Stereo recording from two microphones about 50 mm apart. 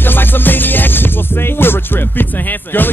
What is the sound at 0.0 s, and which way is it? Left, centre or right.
Music, left.